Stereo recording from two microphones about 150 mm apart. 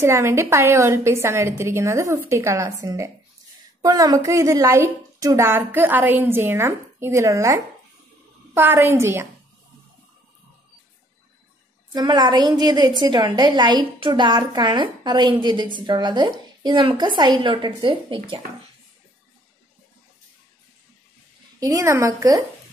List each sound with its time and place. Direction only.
0.0 s a woman's voice: 20° right (ahead or behind)
11.9 s a woman's voice: 30° right (ahead or behind)
21.5 s a woman's voice: 20° right (ahead or behind)